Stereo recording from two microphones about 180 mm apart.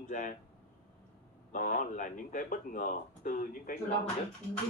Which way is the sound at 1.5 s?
45° left (ahead or behind).